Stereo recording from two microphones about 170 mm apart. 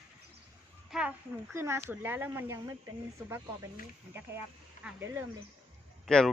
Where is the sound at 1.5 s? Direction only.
15° right (ahead or behind).